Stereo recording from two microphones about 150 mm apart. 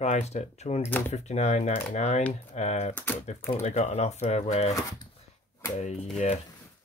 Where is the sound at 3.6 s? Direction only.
50° left (ahead or behind).